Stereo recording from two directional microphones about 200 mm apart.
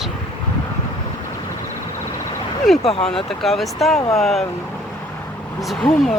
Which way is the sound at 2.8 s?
30° left (ahead or behind).